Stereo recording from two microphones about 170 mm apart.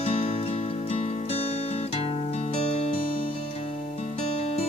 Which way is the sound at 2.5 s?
35° left (ahead or behind).